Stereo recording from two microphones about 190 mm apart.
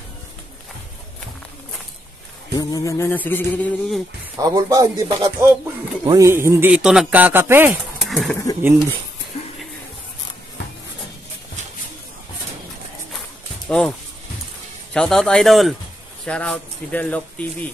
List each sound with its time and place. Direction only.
2.5 s a man's voice: 20° left (ahead or behind)
4.4 s a man's voice: 20° right (ahead or behind)
8.0 s a sound: centre (ahead or behind)
13.7 s a man's voice: 5° left (ahead or behind)